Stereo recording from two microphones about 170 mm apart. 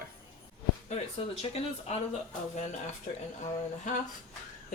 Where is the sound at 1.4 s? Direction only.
35° left (ahead or behind).